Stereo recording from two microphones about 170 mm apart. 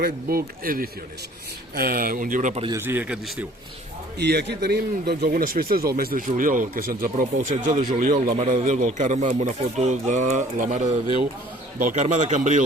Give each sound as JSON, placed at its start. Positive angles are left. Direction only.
{"t": 0.0, "sound": "speech", "side_deg": -60}
{"t": 2.7, "sound": "speech", "side_deg": -10}
{"t": 4.2, "sound": "speech", "side_deg": -75}
{"t": 7.5, "sound": "speech", "side_deg": -35}
{"t": 7.8, "sound": "speech", "side_deg": -50}